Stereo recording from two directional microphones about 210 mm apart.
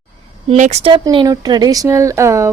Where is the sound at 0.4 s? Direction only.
35° right (ahead or behind).